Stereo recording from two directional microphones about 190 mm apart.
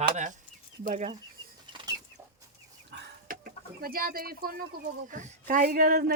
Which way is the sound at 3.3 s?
50° right (ahead or behind).